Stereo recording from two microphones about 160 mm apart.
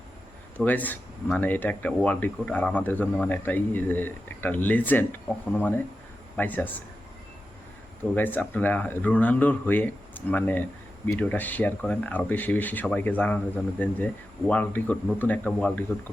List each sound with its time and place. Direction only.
0.5 s speech: 10° left (ahead or behind)
8.1 s speech: 10° left (ahead or behind)